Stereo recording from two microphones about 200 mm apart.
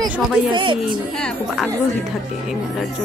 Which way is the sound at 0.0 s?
25° right (ahead or behind).